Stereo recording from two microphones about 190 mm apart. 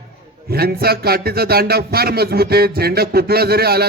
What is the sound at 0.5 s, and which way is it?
A man's voice, 55° right (ahead or behind).